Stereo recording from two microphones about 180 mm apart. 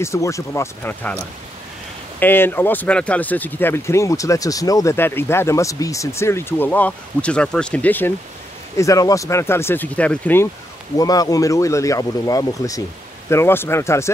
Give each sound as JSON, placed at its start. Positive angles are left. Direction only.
{"t": 0.0, "sound": "speech", "side_deg": 15}
{"t": 2.1, "sound": "speech", "side_deg": 10}
{"t": 11.0, "sound": "speech", "side_deg": 20}